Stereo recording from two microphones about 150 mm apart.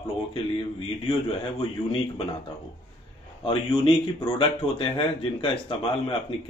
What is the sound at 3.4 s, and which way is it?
Speech, 35° left (ahead or behind).